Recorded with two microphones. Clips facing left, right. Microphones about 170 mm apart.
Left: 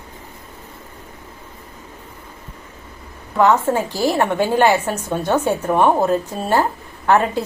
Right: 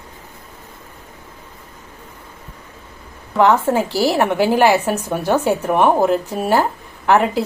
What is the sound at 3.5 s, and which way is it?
Speech, 10° right (ahead or behind).